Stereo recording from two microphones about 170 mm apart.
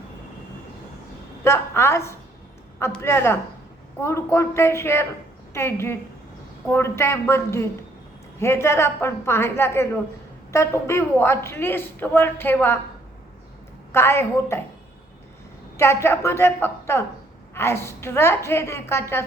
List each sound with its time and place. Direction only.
1.5 s a woman's voice: 15° left (ahead or behind)
13.9 s a woman's voice: 15° left (ahead or behind)
15.8 s a woman's voice: 15° left (ahead or behind)